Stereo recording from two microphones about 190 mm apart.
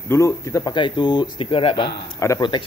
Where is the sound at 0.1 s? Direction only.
15° left (ahead or behind).